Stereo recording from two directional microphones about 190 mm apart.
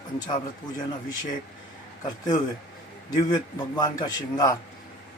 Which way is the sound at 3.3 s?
20° left (ahead or behind).